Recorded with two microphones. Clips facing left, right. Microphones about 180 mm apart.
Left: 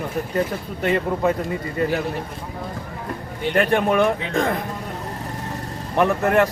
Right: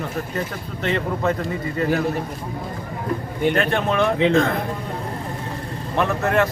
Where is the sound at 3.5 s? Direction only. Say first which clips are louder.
Left 7 dB; 15° left (ahead or behind).